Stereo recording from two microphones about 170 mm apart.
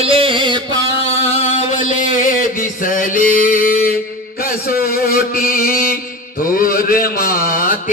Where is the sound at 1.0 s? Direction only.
40° left (ahead or behind).